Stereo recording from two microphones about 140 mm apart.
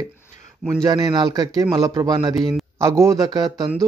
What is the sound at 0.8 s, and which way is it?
A man's voice, 30° right (ahead or behind).